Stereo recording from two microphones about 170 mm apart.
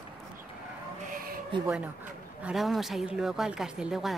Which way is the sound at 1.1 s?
60° right (ahead or behind).